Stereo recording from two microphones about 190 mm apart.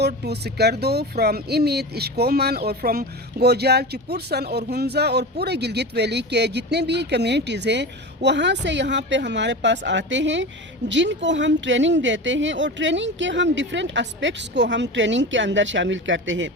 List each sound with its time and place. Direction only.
0.0 s speech: 60° right (ahead or behind); by 16.5 s 80° right